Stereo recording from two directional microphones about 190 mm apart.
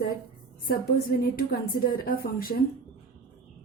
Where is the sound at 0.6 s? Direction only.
50° left (ahead or behind).